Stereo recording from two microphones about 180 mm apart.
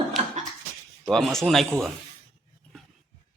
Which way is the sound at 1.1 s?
5° left (ahead or behind).